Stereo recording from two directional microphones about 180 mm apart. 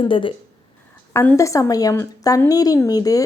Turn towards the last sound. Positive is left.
turn(degrees=20)  # may be behind; listen again after turning